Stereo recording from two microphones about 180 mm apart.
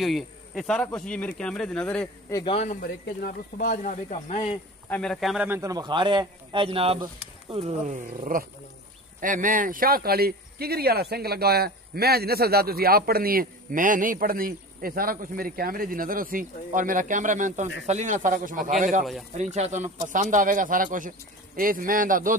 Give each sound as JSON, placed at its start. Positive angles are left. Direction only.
{"t": 0.0, "sound": "speech", "side_deg": 0}
{"t": 2.3, "sound": "speech", "side_deg": 30}
{"t": 2.7, "sound": "speech", "side_deg": 55}
{"t": 4.8, "sound": "speech", "side_deg": 5}
{"t": 5.6, "sound": "a man's voice", "side_deg": -20}